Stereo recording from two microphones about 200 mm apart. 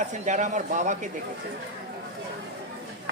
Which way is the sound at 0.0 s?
35° right (ahead or behind).